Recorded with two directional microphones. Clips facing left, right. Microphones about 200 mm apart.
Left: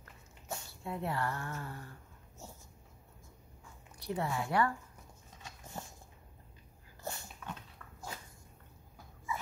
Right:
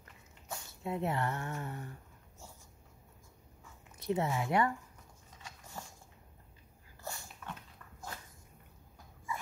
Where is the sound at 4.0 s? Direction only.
20° right (ahead or behind).